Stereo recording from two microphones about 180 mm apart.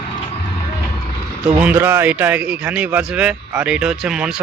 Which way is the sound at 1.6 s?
10° right (ahead or behind).